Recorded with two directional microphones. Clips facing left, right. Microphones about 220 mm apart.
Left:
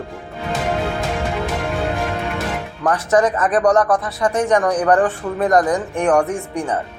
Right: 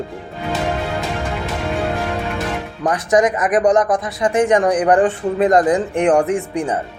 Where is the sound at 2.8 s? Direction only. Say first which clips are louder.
Right 1 dB; 15° right (ahead or behind).